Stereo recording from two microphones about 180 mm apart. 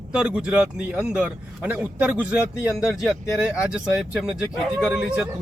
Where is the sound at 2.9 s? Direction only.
Centre (ahead or behind).